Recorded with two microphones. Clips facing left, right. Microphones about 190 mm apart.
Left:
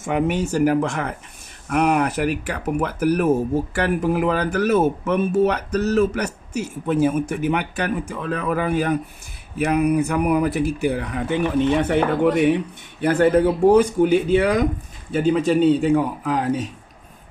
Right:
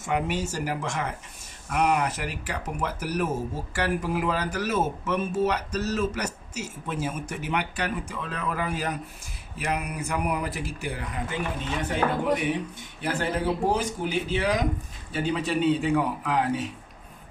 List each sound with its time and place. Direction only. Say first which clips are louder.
0.0 s speech: left 6 dB; 55° left (ahead or behind)
13.0 s speech: left 11 dB; 55° left (ahead or behind)